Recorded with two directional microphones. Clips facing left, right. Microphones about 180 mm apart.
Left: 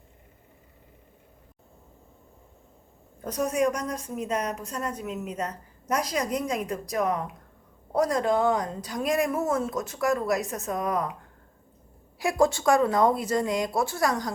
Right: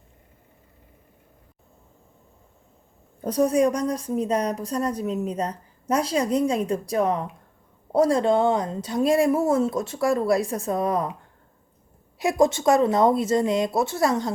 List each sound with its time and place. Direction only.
3.2 s a woman's voice: 30° right (ahead or behind)
12.2 s speech: 20° right (ahead or behind)